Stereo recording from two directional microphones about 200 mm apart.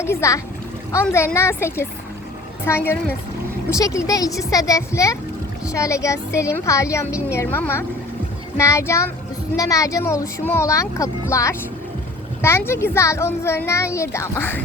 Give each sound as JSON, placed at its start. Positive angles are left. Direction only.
{"t": 0.0, "sound": "a woman's voice", "side_deg": 15}